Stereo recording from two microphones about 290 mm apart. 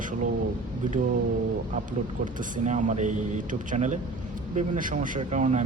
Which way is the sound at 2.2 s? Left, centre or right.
Right.